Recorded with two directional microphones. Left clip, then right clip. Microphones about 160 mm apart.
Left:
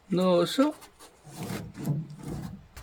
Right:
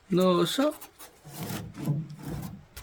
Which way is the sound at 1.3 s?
5° right (ahead or behind).